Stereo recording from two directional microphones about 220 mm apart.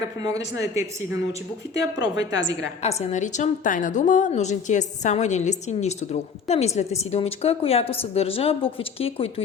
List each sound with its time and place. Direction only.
0.2 s speech: 15° right (ahead or behind)
2.0 s a woman's voice: 55° left (ahead or behind)
2.8 s a woman's voice: 30° left (ahead or behind)